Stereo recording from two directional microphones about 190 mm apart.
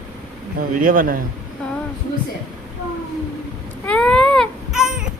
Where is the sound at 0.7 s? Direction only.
45° right (ahead or behind).